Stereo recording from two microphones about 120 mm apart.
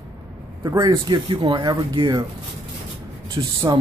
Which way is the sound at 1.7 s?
35° right (ahead or behind).